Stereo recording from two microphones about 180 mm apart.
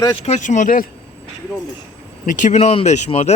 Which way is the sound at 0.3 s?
40° left (ahead or behind).